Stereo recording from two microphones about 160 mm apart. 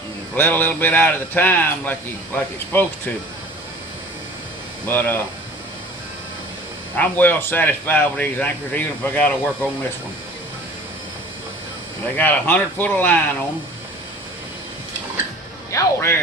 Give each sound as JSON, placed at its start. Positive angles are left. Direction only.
{"t": 0.3, "sound": "a man's voice", "side_deg": 15}
{"t": 4.9, "sound": "a man's voice", "side_deg": 10}
{"t": 6.9, "sound": "a man's voice", "side_deg": 10}
{"t": 12.1, "sound": "a man's voice", "side_deg": 10}
{"t": 15.7, "sound": "a man's voice", "side_deg": 15}